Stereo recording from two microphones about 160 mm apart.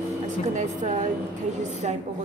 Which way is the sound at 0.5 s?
50° right (ahead or behind).